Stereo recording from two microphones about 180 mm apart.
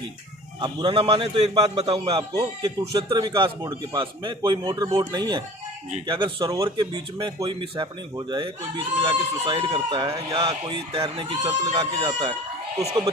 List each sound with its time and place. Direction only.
0.6 s speech: 25° right (ahead or behind)
11.9 s speech: 20° right (ahead or behind)